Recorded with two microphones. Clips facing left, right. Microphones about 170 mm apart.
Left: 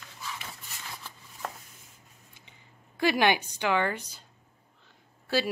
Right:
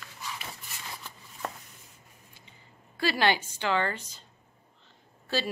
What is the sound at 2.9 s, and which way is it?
Speech, 15° left (ahead or behind).